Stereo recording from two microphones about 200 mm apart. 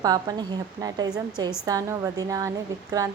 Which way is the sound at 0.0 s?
20° right (ahead or behind).